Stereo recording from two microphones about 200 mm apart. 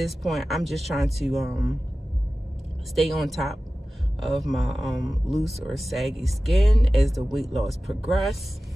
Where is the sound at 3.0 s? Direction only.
Centre (ahead or behind).